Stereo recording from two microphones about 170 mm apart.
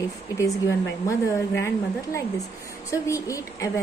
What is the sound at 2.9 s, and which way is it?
Speech, 20° left (ahead or behind).